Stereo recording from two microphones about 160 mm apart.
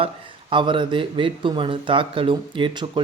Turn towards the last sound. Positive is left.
turn(degrees=-30)  # may be behind; listen again after turning